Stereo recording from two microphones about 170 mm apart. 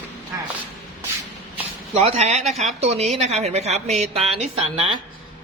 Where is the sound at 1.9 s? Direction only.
40° right (ahead or behind).